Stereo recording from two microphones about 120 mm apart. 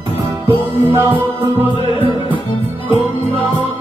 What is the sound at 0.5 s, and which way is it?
Music, 20° right (ahead or behind).